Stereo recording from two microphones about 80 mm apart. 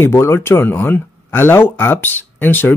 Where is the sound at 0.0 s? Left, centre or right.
Left.